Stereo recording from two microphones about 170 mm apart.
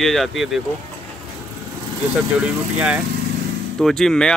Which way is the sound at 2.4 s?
5° right (ahead or behind).